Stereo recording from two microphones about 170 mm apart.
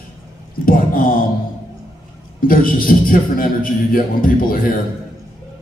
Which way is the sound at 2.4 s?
55° left (ahead or behind).